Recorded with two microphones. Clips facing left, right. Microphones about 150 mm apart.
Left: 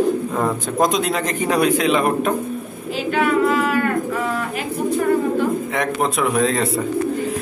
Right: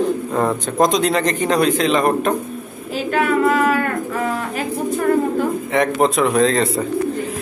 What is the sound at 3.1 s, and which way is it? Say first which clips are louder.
Bird: right 1 dB; 45° right (ahead or behind).